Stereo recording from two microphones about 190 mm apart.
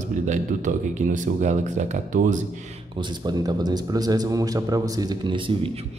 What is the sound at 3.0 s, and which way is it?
A man's voice, 20° right (ahead or behind).